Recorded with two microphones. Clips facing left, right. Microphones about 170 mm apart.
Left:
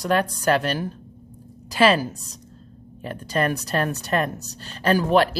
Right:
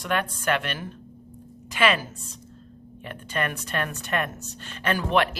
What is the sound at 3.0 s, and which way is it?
A woman's voice, 35° left (ahead or behind).